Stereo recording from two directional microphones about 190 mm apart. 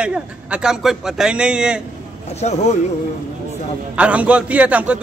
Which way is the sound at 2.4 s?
35° left (ahead or behind).